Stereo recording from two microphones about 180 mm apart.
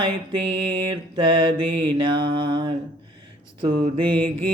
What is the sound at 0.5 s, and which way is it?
Mantra, 30° right (ahead or behind).